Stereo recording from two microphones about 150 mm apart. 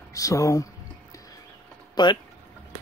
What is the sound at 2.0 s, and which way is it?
Speech, 30° left (ahead or behind).